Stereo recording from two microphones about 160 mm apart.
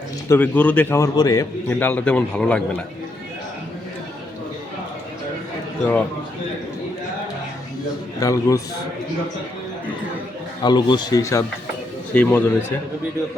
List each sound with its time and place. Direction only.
0.3 s a man's voice: 10° left (ahead or behind)
8.2 s speech: 20° left (ahead or behind)
10.6 s a man's voice: 30° left (ahead or behind); by 12.7 s 10° left (ahead or behind)